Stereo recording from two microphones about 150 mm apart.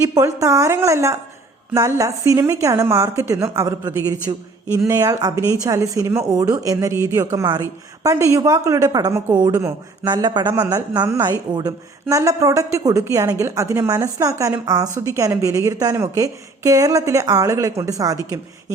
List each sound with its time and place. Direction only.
0.0 s speech: 20° right (ahead or behind)